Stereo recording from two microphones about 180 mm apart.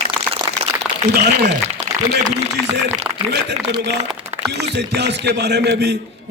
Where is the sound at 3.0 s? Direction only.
35° right (ahead or behind).